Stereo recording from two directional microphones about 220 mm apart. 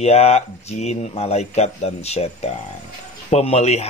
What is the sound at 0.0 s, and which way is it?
Speech, 30° left (ahead or behind).